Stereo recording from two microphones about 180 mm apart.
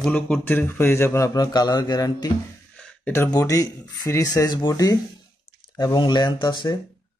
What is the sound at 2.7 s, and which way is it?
Speech, 10° left (ahead or behind).